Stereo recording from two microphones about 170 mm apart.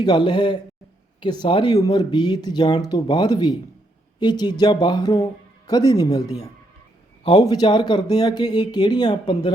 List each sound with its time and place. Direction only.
0.0 s speech: 25° left (ahead or behind)